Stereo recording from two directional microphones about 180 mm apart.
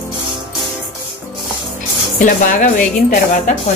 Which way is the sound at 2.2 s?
50° left (ahead or behind).